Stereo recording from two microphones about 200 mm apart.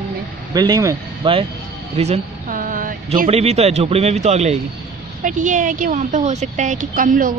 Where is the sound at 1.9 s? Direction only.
30° right (ahead or behind).